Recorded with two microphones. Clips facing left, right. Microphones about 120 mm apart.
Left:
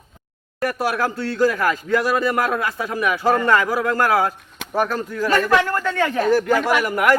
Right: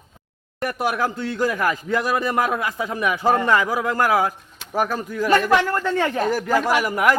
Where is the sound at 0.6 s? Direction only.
20° right (ahead or behind).